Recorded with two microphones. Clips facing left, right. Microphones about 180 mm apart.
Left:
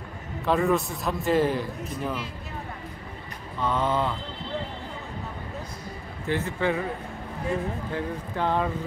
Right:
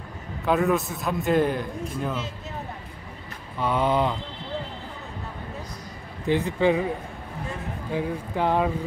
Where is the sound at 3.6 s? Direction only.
15° right (ahead or behind).